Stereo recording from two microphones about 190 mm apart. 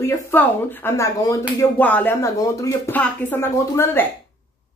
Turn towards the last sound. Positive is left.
turn(degrees=10)  # may be behind; listen again after turning